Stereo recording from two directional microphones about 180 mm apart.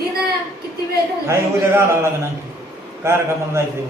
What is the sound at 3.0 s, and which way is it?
Speech, 15° right (ahead or behind).